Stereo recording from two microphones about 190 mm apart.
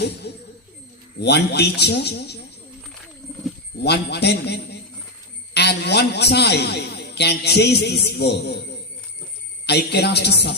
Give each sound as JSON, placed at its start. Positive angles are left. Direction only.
{"t": 0.0, "sound": "music", "side_deg": 60}
{"t": 1.2, "sound": "a man's voice", "side_deg": 60}
{"t": 3.8, "sound": "a man's voice", "side_deg": 60}
{"t": 9.6, "sound": "a man's voice", "side_deg": 60}